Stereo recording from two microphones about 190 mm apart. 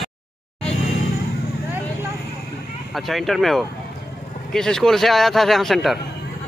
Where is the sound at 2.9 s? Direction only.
Centre (ahead or behind).